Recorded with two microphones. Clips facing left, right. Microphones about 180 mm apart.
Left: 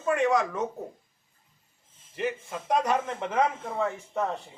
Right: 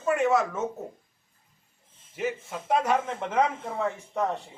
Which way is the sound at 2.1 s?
5° right (ahead or behind).